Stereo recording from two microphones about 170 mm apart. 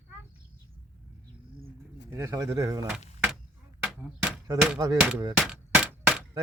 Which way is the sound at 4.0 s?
10° right (ahead or behind).